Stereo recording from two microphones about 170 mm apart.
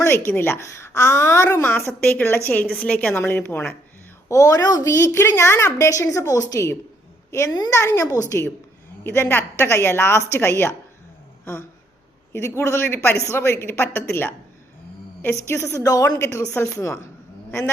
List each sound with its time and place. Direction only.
0.3 s a woman's voice: 15° left (ahead or behind)
12.5 s a woman's voice: 15° left (ahead or behind)
15.4 s a woman's voice: 15° left (ahead or behind)